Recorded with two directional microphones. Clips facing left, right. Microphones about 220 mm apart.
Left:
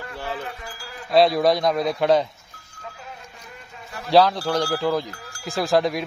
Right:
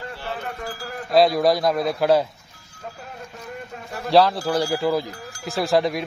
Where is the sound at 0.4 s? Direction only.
50° right (ahead or behind).